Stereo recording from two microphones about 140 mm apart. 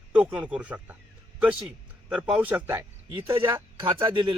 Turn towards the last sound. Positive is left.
turn(degrees=-35)  # may be behind; listen again after turning